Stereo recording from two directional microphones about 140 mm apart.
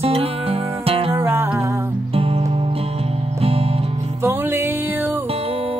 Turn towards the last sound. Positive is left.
turn(degrees=-15)  # may be behind; listen again after turning